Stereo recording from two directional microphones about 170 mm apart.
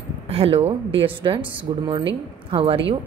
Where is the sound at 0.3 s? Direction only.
35° right (ahead or behind).